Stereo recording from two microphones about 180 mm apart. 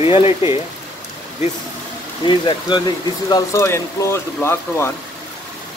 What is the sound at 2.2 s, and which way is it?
Speech, 25° left (ahead or behind).